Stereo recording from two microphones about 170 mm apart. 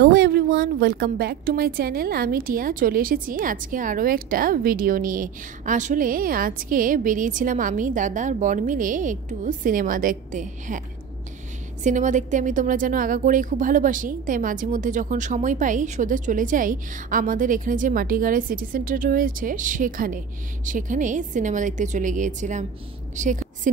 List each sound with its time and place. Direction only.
0.0 s a woman's voice: 60° right (ahead or behind)
11.8 s a woman's voice: 50° right (ahead or behind)